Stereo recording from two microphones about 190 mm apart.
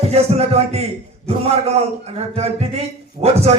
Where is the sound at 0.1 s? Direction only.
35° right (ahead or behind).